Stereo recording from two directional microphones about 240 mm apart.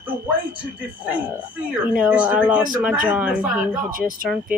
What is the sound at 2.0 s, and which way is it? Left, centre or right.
Speech, centre.